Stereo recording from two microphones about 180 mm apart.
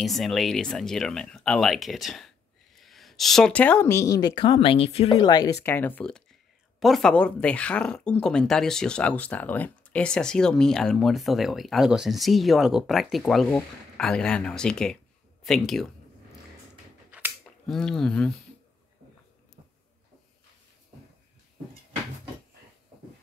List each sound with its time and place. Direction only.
0.0 s speech: centre (ahead or behind); by 5.1 s 35° left (ahead or behind)
5.1 s speech: 20° left (ahead or behind); by 15.0 s 5° left (ahead or behind)
15.4 s a sound: centre (ahead or behind)
17.6 s speech: 5° left (ahead or behind)